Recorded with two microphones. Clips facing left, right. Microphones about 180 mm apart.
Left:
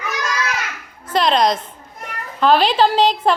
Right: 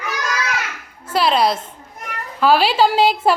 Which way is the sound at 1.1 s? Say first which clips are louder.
Left 1 dB; 5° right (ahead or behind).